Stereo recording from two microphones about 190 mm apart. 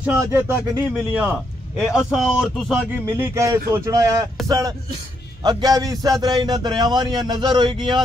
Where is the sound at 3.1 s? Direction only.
15° right (ahead or behind).